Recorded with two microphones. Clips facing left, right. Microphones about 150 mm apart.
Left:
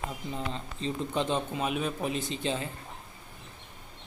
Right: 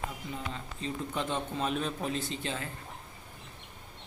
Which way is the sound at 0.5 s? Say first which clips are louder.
Left 3 dB; 25° left (ahead or behind).